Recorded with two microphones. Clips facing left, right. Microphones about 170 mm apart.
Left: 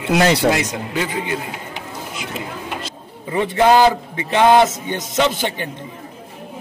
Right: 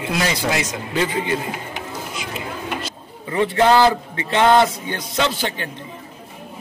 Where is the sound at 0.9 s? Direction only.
5° left (ahead or behind).